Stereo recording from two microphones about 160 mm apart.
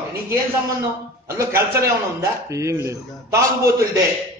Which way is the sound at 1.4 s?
15° right (ahead or behind).